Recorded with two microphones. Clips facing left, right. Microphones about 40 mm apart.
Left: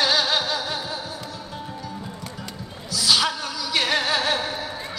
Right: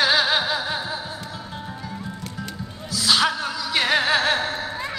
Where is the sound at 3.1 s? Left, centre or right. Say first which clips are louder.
Right 2 dB; centre.